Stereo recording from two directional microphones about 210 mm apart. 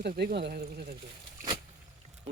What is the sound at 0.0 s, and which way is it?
Speech, 45° right (ahead or behind).